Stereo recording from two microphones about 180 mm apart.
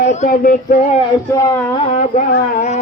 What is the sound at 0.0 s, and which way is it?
Speech, 40° left (ahead or behind).